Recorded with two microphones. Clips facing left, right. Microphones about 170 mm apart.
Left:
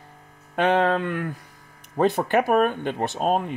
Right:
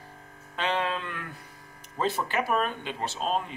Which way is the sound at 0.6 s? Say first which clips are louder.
Left 9 dB; 55° left (ahead or behind).